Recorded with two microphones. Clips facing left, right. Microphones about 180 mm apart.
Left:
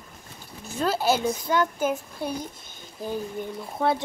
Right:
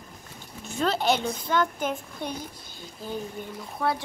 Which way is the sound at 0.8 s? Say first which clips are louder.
Left 2 dB; 5° left (ahead or behind).